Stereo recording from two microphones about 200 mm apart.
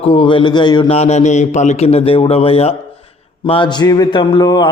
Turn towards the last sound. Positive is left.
turn(degrees=20)  # may be behind; listen again after turning